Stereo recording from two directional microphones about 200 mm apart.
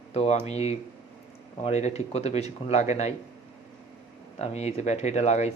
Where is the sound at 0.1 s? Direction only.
35° left (ahead or behind).